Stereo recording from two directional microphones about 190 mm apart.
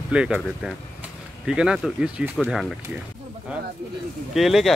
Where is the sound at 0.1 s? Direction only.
5° right (ahead or behind).